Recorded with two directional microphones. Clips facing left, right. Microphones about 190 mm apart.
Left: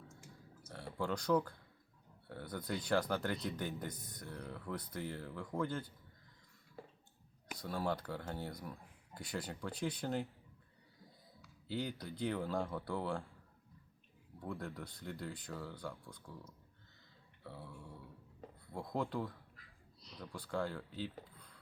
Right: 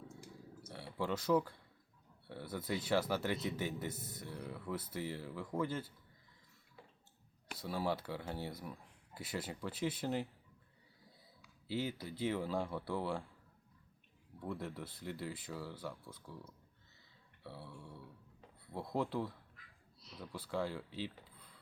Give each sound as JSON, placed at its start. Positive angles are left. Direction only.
{"t": 0.7, "sound": "a man's voice", "side_deg": -5}
{"t": 6.8, "sound": "a sound", "side_deg": 40}
{"t": 7.4, "sound": "a man's voice", "side_deg": -5}
{"t": 11.4, "sound": "a man's voice", "side_deg": -5}
{"t": 14.4, "sound": "a man's voice", "side_deg": -5}
{"t": 17.4, "sound": "a sound", "side_deg": -5}
{"t": 18.7, "sound": "a man's voice", "side_deg": -5}